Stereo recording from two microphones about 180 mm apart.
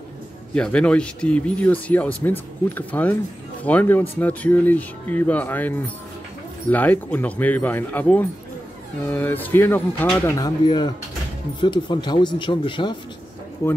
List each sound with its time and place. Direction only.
0.6 s speech: 5° left (ahead or behind); by 12.9 s 25° left (ahead or behind)
13.6 s speech: 15° left (ahead or behind)